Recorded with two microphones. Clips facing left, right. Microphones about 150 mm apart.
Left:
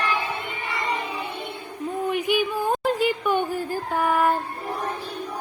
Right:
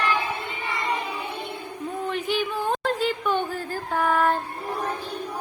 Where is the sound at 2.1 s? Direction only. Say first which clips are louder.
Left 3 dB; 15° left (ahead or behind).